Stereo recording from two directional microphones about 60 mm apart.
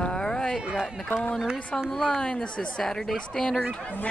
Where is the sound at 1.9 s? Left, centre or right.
Centre.